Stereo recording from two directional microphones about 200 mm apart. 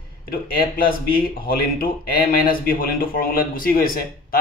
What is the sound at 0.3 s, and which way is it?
Speech, 45° left (ahead or behind).